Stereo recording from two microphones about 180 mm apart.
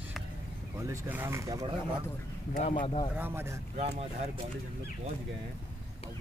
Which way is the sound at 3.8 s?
35° right (ahead or behind).